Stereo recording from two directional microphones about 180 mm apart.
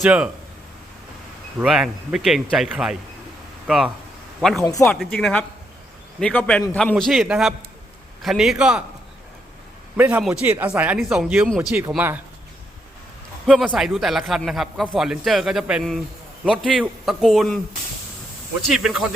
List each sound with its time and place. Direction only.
0.0 s speech: 5° right (ahead or behind)
1.5 s a man's voice: 5° right (ahead or behind)
4.6 s speech: 15° left (ahead or behind)
4.9 s a man's voice: 5° left (ahead or behind)
10.0 s speech: 10° right (ahead or behind)
13.4 s a man's voice: centre (ahead or behind)
18.7 s a man's voice: centre (ahead or behind)